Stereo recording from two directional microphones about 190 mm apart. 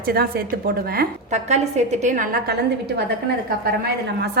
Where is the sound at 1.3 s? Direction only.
35° right (ahead or behind).